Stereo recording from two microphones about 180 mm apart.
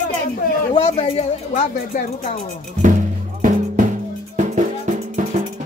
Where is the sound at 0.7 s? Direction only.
35° left (ahead or behind).